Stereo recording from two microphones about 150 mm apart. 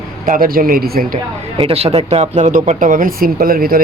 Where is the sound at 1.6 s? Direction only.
40° right (ahead or behind); by 3.8 s 75° right (ahead or behind).